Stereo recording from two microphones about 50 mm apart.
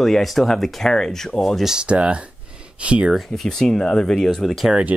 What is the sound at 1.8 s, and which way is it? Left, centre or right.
Speech, right.